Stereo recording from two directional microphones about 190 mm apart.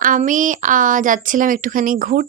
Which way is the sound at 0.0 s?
45° right (ahead or behind).